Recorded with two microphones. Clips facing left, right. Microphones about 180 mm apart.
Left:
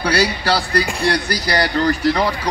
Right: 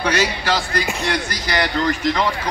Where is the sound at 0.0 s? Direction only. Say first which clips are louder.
Left 2 dB; 35° left (ahead or behind).